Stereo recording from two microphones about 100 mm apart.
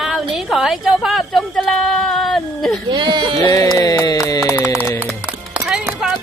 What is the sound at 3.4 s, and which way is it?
Music, 35° left (ahead or behind).